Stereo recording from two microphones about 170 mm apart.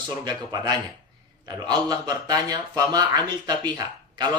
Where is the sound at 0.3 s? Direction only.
25° right (ahead or behind).